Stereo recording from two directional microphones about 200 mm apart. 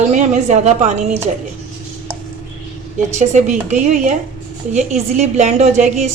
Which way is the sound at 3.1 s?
35° right (ahead or behind).